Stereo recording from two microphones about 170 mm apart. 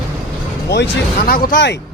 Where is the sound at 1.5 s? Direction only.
90° left.